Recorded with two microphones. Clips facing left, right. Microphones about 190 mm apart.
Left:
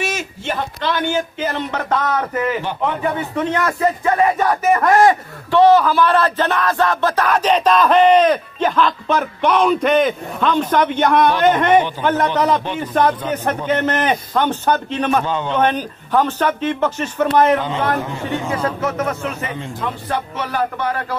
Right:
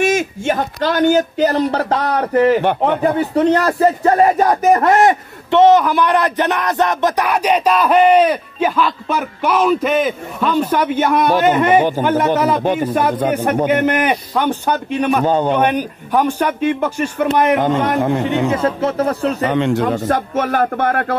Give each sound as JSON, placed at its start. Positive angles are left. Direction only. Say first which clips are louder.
{"t": 0.0, "sound": "speech", "louder": "right 8 dB", "side_deg": -50}
{"t": 4.8, "sound": "a man's voice", "louder": "even", "side_deg": -20}
{"t": 15.2, "sound": "music", "louder": "right 7 dB", "side_deg": -45}
{"t": 15.5, "sound": "a man's voice", "louder": "right 2 dB", "side_deg": -10}
{"t": 17.6, "sound": "music", "louder": "right 6 dB", "side_deg": -50}
{"t": 18.0, "sound": "speech", "louder": "right 8 dB", "side_deg": -65}
{"t": 18.5, "sound": "speech", "louder": "right 4 dB", "side_deg": -25}
{"t": 19.4, "sound": "speech", "louder": "right 10 dB", "side_deg": -75}
{"t": 20.1, "sound": "music", "louder": "right 6 dB", "side_deg": -50}